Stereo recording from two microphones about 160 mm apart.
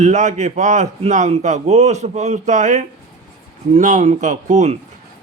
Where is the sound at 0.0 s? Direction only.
50° right (ahead or behind).